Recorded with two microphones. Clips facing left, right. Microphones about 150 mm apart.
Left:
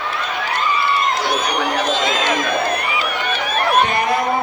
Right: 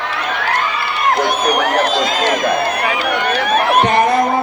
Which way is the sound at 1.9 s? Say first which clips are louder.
Right 3 dB; 35° right (ahead or behind).